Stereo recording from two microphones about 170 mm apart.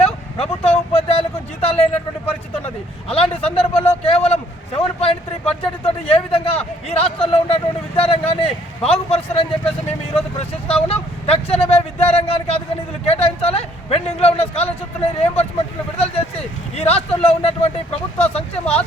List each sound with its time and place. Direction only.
0.0 s vehicle: 35° left (ahead or behind)
1.6 s a sound: 35° left (ahead or behind)
3.1 s a man's voice: 35° left (ahead or behind)
10.2 s vehicle: 35° left (ahead or behind)
13.1 s a sound: 35° left (ahead or behind)
15.2 s vehicle: 35° left (ahead or behind)